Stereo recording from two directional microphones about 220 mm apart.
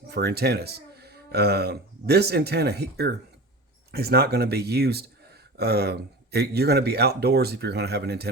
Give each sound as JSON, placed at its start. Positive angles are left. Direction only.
{"t": 0.1, "sound": "speech", "side_deg": -45}